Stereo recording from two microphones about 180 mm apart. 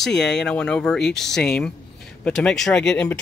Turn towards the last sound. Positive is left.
turn(degrees=5)  # may be behind; listen again after turning